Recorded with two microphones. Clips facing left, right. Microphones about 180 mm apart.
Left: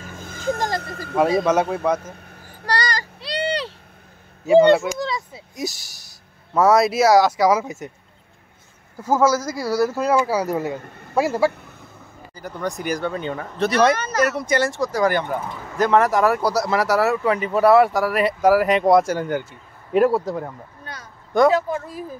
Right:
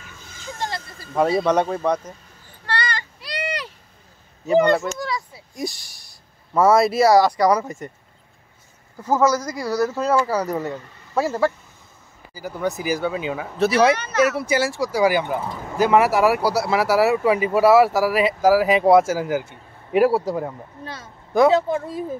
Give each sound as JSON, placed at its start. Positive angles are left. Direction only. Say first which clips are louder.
{"t": 0.0, "sound": "a sound", "louder": "left 12 dB", "side_deg": 50}
{"t": 0.7, "sound": "speech", "louder": "left 7 dB", "side_deg": 65}
{"t": 1.4, "sound": "speech", "louder": "even", "side_deg": 5}
{"t": 2.1, "sound": "a sound", "louder": "left 7 dB", "side_deg": 60}
{"t": 2.6, "sound": "a sound", "louder": "left 3 dB", "side_deg": 40}
{"t": 4.9, "sound": "speech", "louder": "left 2 dB", "side_deg": 25}
{"t": 5.6, "sound": "speech", "louder": "even", "side_deg": 5}
{"t": 9.0, "sound": "speech", "louder": "left 1 dB", "side_deg": 10}
{"t": 10.8, "sound": "a man's voice", "louder": "left 6 dB", "side_deg": 55}
{"t": 11.1, "sound": "speech", "louder": "left 1 dB", "side_deg": 10}
{"t": 12.4, "sound": "speech", "louder": "right 2 dB", "side_deg": -5}
{"t": 13.9, "sound": "speech", "louder": "right 1 dB", "side_deg": 40}
{"t": 14.2, "sound": "speech", "louder": "right 1 dB", "side_deg": -5}
{"t": 20.8, "sound": "speech", "louder": "right 4 dB", "side_deg": -25}